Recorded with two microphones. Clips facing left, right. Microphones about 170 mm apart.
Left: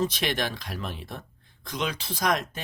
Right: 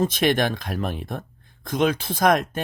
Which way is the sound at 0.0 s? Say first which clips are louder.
Right 7 dB; 50° right (ahead or behind).